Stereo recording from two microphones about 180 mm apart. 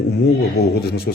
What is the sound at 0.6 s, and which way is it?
Speech, 60° left (ahead or behind).